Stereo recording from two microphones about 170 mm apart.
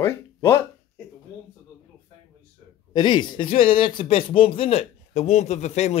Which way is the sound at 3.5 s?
55° left (ahead or behind).